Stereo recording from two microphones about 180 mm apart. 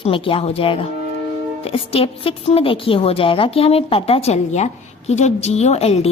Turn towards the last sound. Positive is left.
turn(degrees=35)  # may be behind; listen again after turning